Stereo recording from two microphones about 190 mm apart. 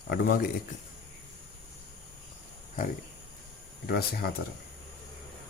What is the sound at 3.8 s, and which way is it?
Speech, 50° left (ahead or behind).